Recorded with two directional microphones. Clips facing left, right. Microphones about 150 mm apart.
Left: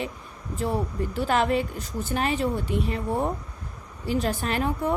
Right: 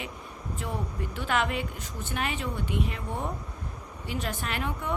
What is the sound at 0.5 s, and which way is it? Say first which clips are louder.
Speech: left 8 dB; 35° left (ahead or behind).